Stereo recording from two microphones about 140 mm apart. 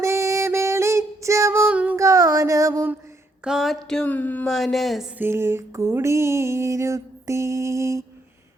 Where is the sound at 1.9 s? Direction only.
25° right (ahead or behind).